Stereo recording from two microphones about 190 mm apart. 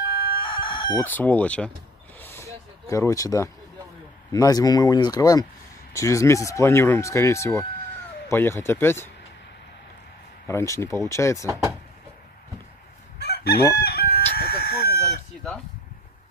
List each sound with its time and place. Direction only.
0.3 s chicken: 25° left (ahead or behind)
1.0 s speech: 10° left (ahead or behind)
2.1 s vehicle: 15° left (ahead or behind)
4.3 s speech: 20° left (ahead or behind)
10.4 s speech: 15° left (ahead or behind)
11.4 s speech: 15° right (ahead or behind)
13.2 s chicken: 60° left (ahead or behind)